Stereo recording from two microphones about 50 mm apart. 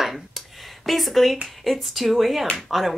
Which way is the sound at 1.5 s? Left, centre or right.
Centre.